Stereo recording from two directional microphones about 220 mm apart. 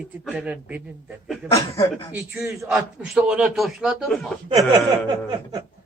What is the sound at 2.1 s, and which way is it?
A man's voice, 5° right (ahead or behind).